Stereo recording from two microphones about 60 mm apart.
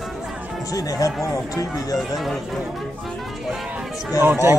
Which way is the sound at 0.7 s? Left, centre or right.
Left.